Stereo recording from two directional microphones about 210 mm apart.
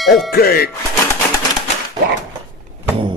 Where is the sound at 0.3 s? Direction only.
45° left (ahead or behind).